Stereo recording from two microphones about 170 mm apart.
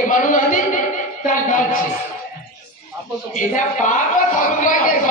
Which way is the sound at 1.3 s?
50° left (ahead or behind).